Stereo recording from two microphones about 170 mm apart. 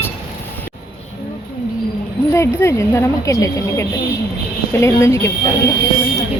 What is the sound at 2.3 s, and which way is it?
Speech, 15° left (ahead or behind).